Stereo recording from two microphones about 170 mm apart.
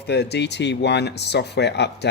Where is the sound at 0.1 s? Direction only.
80° left.